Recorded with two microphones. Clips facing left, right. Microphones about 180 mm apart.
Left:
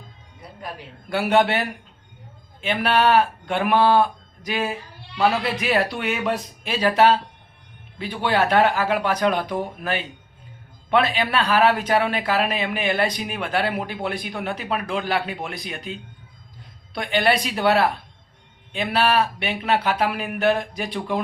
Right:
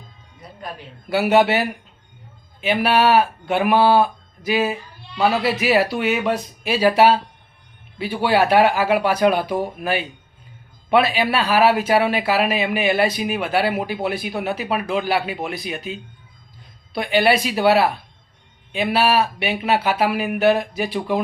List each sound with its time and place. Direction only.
1.1 s speech: 5° right (ahead or behind)